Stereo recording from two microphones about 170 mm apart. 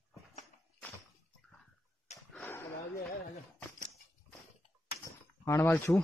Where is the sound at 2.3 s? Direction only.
10° left (ahead or behind).